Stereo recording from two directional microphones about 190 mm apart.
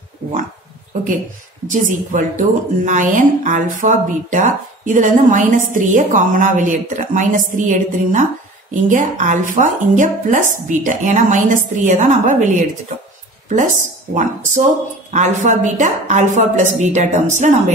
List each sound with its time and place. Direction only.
1.7 s a woman's voice: 45° right (ahead or behind)
14.1 s a woman's voice: 40° right (ahead or behind)